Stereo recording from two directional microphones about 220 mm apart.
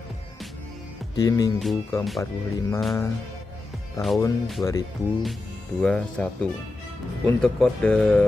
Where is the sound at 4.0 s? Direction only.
15° left (ahead or behind).